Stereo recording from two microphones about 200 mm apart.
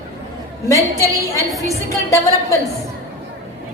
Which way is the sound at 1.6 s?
15° left (ahead or behind).